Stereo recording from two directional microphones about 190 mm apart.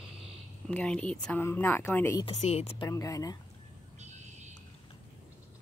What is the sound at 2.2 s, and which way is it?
Speech, 35° left (ahead or behind).